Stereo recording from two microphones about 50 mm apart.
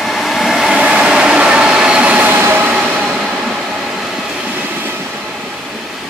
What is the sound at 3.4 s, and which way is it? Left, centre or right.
Train, centre.